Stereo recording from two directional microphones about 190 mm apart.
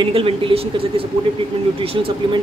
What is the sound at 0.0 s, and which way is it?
Speech, 30° right (ahead or behind).